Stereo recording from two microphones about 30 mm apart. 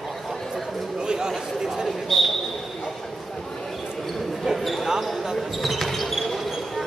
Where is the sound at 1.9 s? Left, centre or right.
Centre.